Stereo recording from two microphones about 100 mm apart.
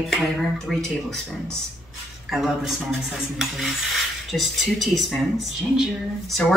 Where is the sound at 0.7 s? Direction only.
5° left (ahead or behind).